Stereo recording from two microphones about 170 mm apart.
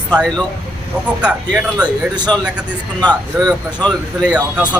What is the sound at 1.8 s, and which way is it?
Speech, 25° right (ahead or behind).